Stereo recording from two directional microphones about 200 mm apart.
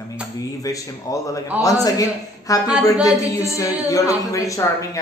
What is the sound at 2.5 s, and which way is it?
A woman's voice, 15° left (ahead or behind).